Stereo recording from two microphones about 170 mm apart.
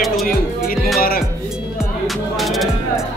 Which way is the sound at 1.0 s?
60° left (ahead or behind).